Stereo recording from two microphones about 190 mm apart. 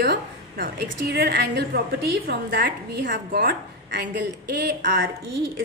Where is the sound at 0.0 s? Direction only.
60° right (ahead or behind).